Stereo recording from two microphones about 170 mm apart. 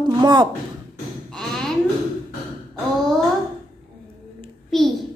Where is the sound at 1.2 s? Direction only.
5° left (ahead or behind).